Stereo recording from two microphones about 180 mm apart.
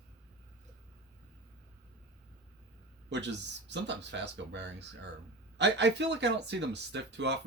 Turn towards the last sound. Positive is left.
turn(degrees=-75)  # may be behind; listen again after turning